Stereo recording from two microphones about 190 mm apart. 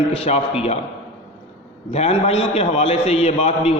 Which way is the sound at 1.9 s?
35° left (ahead or behind).